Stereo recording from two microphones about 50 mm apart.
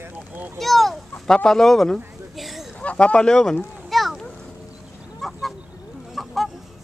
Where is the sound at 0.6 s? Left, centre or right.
Centre.